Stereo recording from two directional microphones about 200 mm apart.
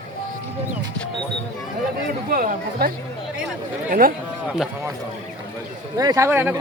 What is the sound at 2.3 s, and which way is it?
Speech, 45° right (ahead or behind).